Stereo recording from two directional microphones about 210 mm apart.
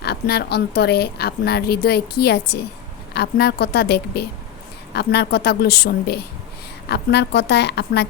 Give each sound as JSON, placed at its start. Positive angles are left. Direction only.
{"t": 0.0, "sound": "a woman's voice", "side_deg": 50}